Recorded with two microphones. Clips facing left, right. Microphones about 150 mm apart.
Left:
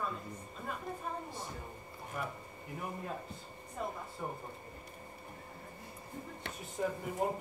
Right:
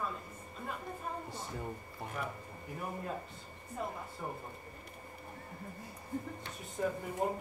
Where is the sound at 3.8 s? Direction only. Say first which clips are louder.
Left 1 dB; centre (ahead or behind).